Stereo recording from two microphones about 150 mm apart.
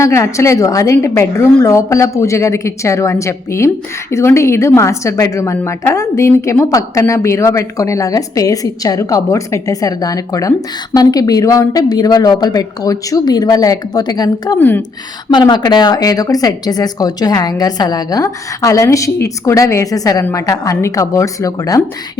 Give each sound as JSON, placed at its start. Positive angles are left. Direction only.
{"t": 0.0, "sound": "a woman's voice", "side_deg": 20}
{"t": 14.6, "sound": "a woman's voice", "side_deg": 10}
{"t": 15.3, "sound": "a woman's voice", "side_deg": 30}